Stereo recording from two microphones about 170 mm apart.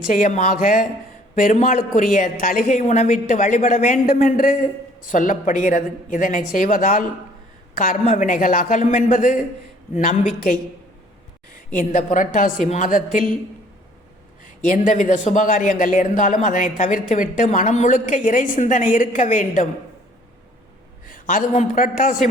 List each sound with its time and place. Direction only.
0.1 s a woman's voice: 45° left (ahead or behind)
11.8 s a woman's voice: 50° left (ahead or behind)
14.4 s a woman's voice: 50° left (ahead or behind)
21.1 s a woman's voice: 50° left (ahead or behind)